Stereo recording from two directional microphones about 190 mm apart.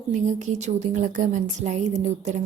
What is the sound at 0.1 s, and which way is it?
Speech, 40° right (ahead or behind).